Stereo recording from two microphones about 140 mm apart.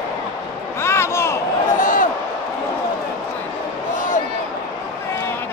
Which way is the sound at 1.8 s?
75° left (ahead or behind).